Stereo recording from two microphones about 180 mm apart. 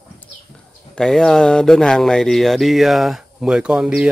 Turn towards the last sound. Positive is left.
turn(degrees=-5)  # may be behind; listen again after turning